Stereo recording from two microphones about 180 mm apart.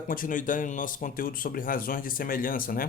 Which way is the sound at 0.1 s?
50° left (ahead or behind).